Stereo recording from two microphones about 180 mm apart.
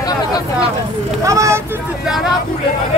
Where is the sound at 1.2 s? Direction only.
15° right (ahead or behind).